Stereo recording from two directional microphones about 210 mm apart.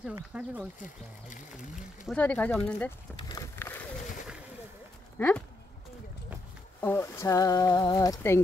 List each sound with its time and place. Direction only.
0.0 s speech: 5° right (ahead or behind)
0.8 s speech: 35° left (ahead or behind)
2.0 s speech: 5° left (ahead or behind)
3.2 s vehicle: 20° left (ahead or behind)
3.5 s a sound: 10° left (ahead or behind)
6.8 s speech: 10° left (ahead or behind)